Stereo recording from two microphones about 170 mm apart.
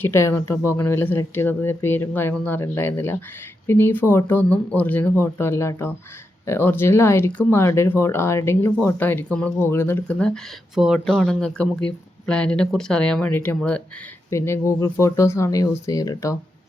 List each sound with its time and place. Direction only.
0.0 s speech: 15° left (ahead or behind)